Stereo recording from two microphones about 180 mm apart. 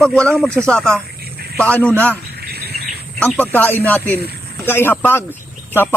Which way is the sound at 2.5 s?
60° right (ahead or behind).